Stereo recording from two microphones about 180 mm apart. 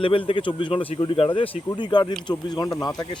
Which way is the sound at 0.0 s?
30° left (ahead or behind).